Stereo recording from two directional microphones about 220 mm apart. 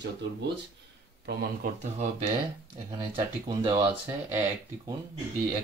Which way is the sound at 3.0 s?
20° right (ahead or behind).